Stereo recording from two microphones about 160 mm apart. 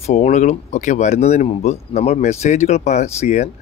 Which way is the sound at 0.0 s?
45° left (ahead or behind).